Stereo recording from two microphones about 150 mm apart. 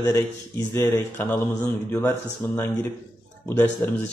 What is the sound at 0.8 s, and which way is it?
A man's voice, 15° left (ahead or behind).